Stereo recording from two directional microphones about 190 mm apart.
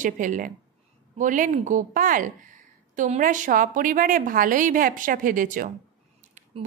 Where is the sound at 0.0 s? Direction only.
45° right (ahead or behind).